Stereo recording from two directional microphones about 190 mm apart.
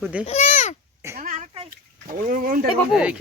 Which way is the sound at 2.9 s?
5° right (ahead or behind).